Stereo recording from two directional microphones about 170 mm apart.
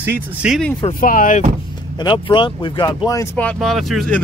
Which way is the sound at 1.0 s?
50° left (ahead or behind).